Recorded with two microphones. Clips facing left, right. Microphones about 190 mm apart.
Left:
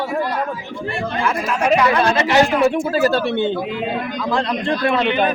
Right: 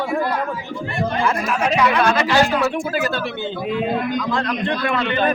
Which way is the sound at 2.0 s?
20° left (ahead or behind).